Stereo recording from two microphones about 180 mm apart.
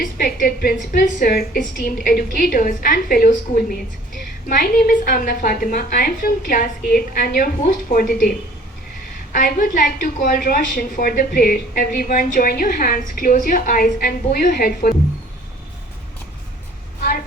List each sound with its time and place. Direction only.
0.0 s a woman's voice: 50° left (ahead or behind)
9.3 s a woman's voice: 45° left (ahead or behind)